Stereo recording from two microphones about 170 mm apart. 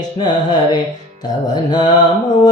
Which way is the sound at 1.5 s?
25° left (ahead or behind).